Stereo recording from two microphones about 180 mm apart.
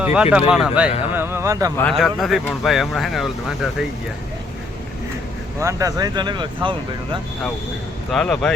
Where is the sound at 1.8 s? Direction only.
5° left (ahead or behind).